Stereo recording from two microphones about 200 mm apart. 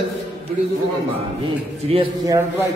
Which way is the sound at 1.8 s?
30° right (ahead or behind).